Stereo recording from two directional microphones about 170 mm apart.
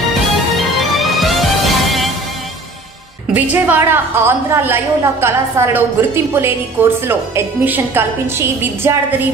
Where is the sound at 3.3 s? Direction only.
10° right (ahead or behind).